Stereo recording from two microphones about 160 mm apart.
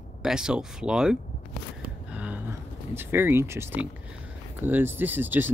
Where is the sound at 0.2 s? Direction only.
5° right (ahead or behind).